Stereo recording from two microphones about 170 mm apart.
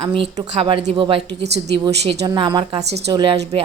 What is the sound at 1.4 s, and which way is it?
Speech, 80° right.